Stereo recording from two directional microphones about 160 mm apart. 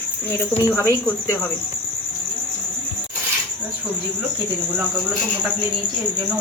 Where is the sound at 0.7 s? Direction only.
15° left (ahead or behind).